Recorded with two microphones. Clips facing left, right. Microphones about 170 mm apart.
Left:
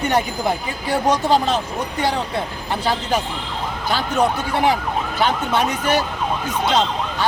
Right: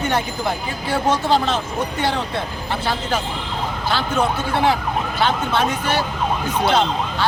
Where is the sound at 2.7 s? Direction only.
15° left (ahead or behind).